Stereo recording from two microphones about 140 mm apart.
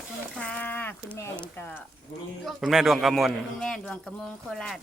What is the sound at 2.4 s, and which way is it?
A man's voice, centre (ahead or behind).